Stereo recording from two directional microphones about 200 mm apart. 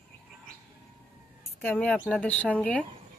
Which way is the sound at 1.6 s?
5° left (ahead or behind).